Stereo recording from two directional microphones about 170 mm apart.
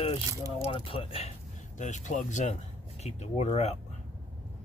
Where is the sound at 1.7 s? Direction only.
45° left (ahead or behind).